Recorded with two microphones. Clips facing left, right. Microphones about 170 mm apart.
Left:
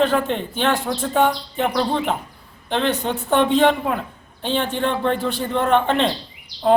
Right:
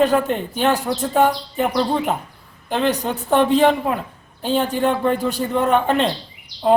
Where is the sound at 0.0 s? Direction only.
5° right (ahead or behind).